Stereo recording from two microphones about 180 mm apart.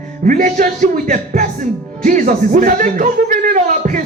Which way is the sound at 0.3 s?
45° right (ahead or behind).